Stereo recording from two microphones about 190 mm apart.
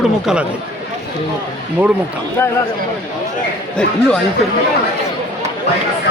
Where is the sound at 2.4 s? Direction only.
10° left (ahead or behind).